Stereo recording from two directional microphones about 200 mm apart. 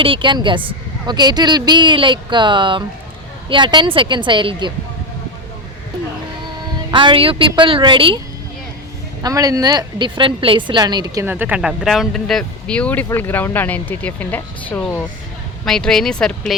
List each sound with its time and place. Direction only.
0.0 s speech: 25° right (ahead or behind)
6.9 s speech: 25° right (ahead or behind)
9.2 s speech: 20° right (ahead or behind); by 16.6 s centre (ahead or behind)